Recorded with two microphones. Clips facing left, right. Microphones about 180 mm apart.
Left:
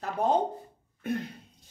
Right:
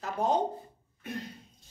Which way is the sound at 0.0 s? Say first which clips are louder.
Left 2 dB; 55° left (ahead or behind).